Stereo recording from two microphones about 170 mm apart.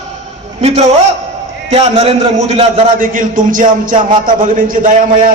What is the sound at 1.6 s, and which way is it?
A man's voice, 35° right (ahead or behind).